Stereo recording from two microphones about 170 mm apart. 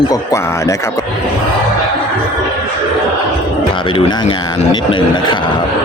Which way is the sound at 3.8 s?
30° left (ahead or behind).